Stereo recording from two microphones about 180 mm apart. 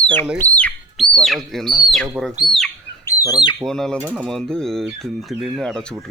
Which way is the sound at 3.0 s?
20° left (ahead or behind).